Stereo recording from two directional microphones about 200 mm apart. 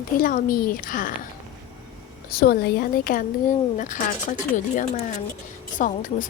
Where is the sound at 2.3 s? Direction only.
50° left (ahead or behind).